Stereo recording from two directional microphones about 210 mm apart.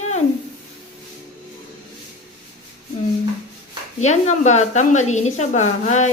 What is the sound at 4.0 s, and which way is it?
A woman's voice, 35° left (ahead or behind).